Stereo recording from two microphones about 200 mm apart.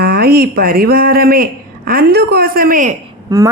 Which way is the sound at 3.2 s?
20° right (ahead or behind).